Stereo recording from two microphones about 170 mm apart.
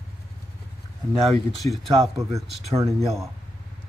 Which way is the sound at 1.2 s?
Centre (ahead or behind).